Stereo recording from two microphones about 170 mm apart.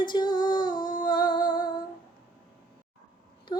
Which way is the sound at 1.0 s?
25° left (ahead or behind).